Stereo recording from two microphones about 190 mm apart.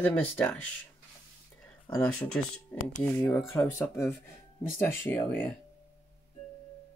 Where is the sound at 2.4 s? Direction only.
5° left (ahead or behind).